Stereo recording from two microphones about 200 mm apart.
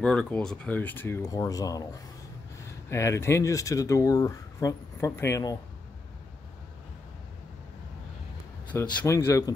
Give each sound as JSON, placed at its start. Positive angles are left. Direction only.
{"t": 0.0, "sound": "speech", "side_deg": 5}
{"t": 2.9, "sound": "speech", "side_deg": 15}
{"t": 8.7, "sound": "speech", "side_deg": 15}